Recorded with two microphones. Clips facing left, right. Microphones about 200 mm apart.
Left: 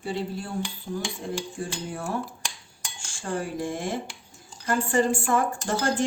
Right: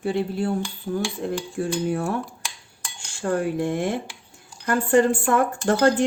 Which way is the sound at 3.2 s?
60° right (ahead or behind).